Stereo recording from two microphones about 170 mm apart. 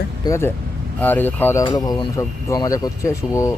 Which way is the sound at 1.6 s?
25° left (ahead or behind).